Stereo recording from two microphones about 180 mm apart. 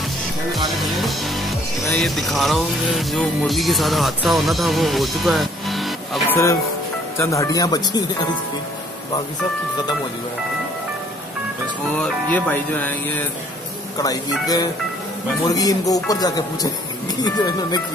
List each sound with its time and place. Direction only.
1.0 s speech: centre (ahead or behind)
7.2 s speech: 15° left (ahead or behind)
12.0 s speech: 10° left (ahead or behind)
13.9 s speech: 20° left (ahead or behind)